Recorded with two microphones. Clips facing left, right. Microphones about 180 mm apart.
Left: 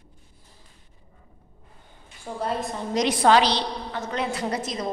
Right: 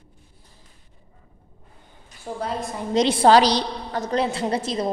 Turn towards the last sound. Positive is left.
turn(degrees=-30)  # may be behind; listen again after turning